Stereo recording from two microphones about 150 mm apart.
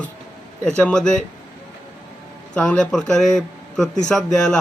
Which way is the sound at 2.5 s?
5° left (ahead or behind).